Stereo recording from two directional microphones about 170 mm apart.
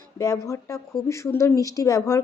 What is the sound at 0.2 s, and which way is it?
Speech, 20° left (ahead or behind).